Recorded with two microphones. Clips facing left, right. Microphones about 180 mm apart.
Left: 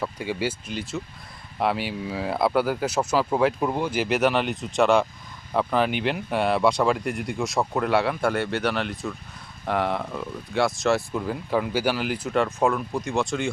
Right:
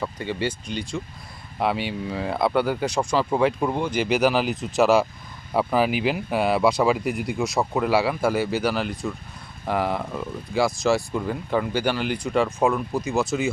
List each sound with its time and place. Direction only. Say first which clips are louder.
0.0 s speech: even; 5° left (ahead or behind)